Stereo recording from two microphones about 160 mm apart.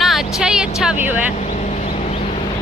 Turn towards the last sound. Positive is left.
turn(degrees=-5)  # may be behind; listen again after turning